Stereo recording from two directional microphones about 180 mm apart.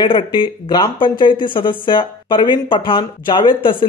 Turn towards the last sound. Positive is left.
turn(degrees=30)  # may be behind; listen again after turning